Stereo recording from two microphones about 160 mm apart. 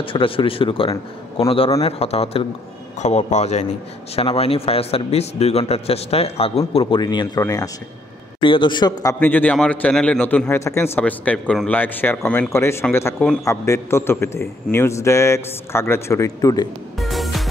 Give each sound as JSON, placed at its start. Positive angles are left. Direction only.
{"t": 0.0, "sound": "a man's voice", "side_deg": 35}
{"t": 9.2, "sound": "a man's voice", "side_deg": 10}
{"t": 17.0, "sound": "music", "side_deg": 0}